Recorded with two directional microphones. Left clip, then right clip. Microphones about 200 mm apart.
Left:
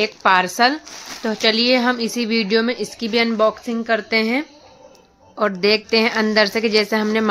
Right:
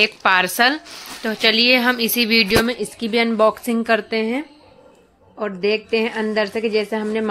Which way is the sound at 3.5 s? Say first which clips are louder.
Right 2 dB; 15° right (ahead or behind).